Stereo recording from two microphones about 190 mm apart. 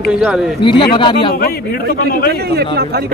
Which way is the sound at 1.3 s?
55° left (ahead or behind).